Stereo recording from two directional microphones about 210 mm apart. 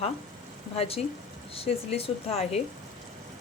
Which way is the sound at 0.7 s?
30° left (ahead or behind).